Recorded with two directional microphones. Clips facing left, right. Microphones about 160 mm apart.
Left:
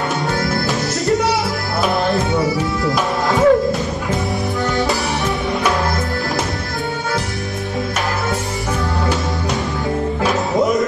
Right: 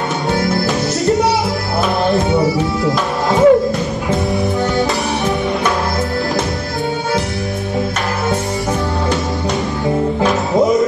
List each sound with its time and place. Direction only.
2.8 s music: 20° right (ahead or behind)
10.2 s music: 20° right (ahead or behind)